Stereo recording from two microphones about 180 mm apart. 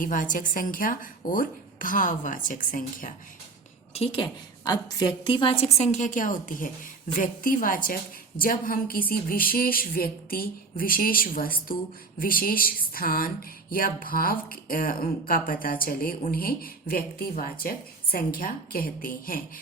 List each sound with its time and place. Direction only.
0.0 s speech: 50° left (ahead or behind)
3.9 s a woman's voice: 30° left (ahead or behind); by 19.4 s 55° left (ahead or behind)